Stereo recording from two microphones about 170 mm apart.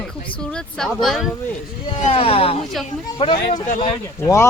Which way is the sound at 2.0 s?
35° left (ahead or behind).